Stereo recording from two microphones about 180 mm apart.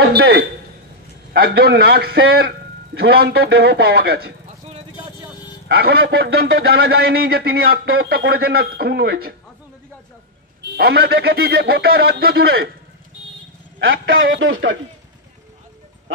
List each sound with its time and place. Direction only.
0.0 s a sound: 65° right (ahead or behind)
1.3 s a man's voice: 60° right (ahead or behind)
5.7 s a man's voice: 60° right (ahead or behind)
10.6 s a man's voice: 60° right (ahead or behind)
13.8 s a man's voice: 75° right (ahead or behind)
14.4 s speech: 90° right